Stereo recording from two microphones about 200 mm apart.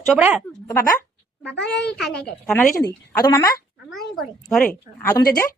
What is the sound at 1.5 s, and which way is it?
Speech, 55° left (ahead or behind).